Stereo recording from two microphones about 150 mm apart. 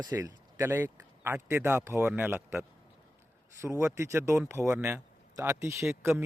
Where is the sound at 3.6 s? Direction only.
15° right (ahead or behind).